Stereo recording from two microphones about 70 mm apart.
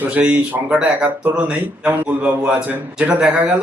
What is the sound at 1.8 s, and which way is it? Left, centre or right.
Speech, right.